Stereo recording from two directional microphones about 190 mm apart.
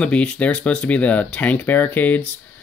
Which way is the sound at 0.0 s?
5° left (ahead or behind).